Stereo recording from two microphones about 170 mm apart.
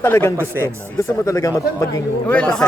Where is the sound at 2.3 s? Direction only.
5° left (ahead or behind).